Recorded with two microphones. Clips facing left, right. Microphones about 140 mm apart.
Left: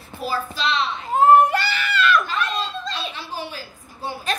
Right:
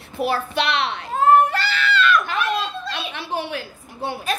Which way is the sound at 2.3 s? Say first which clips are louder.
Right 2 dB; 60° right (ahead or behind).